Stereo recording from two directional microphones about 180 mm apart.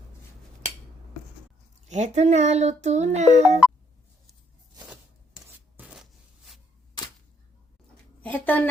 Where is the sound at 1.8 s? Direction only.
40° right (ahead or behind).